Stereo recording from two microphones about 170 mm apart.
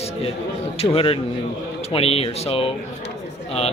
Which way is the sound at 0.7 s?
35° left (ahead or behind).